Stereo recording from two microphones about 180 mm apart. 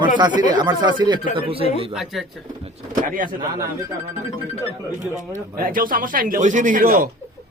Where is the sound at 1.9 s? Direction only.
Centre (ahead or behind).